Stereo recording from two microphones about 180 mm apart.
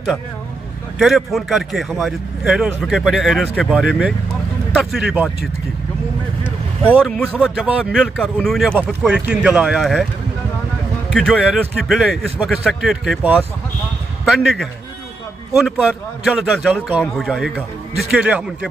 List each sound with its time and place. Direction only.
0.9 s speech: centre (ahead or behind)
7.1 s speech: 5° left (ahead or behind)
7.9 s speech: 5° left (ahead or behind)
8.7 s speech: 5° right (ahead or behind)
11.1 s speech: centre (ahead or behind)